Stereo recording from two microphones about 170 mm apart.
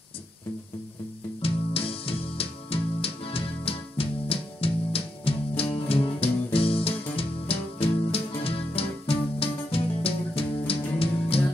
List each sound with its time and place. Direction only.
1.4 s music: 35° left (ahead or behind)